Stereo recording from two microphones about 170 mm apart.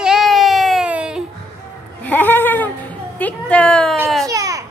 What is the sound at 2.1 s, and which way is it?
Speech, 10° left (ahead or behind).